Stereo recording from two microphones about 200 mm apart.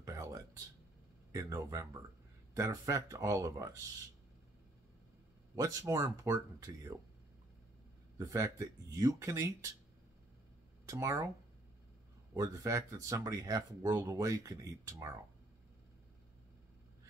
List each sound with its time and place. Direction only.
0.0 s a sound: 15° right (ahead or behind)
1.3 s speech: 15° right (ahead or behind)
5.6 s speech: 15° right (ahead or behind)
8.2 s speech: 15° right (ahead or behind)
10.9 s speech: 15° right (ahead or behind)
12.4 s speech: 15° right (ahead or behind)